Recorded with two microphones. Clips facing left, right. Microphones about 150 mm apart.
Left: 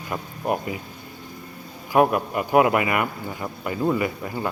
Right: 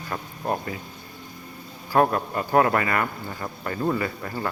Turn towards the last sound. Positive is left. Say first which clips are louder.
# left 3 dB
turn(degrees=15)  # may be behind; listen again after turning